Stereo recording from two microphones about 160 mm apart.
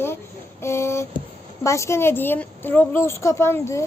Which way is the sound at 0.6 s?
15° left (ahead or behind).